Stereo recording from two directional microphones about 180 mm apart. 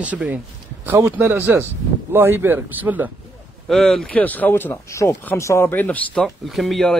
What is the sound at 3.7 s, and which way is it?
Speech, centre (ahead or behind).